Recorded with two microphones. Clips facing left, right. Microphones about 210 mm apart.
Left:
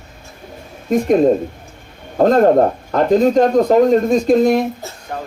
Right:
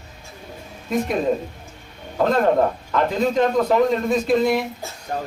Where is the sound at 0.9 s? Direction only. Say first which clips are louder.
Left 8 dB; 45° left (ahead or behind).